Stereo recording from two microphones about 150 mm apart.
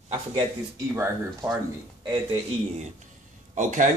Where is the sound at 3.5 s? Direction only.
55° right (ahead or behind).